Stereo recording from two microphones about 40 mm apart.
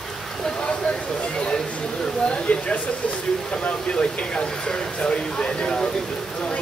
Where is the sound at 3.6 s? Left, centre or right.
Left.